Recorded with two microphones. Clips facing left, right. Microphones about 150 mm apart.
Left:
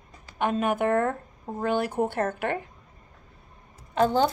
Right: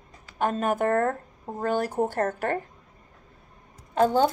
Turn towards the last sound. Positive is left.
turn(degrees=-45)  # may be behind; listen again after turning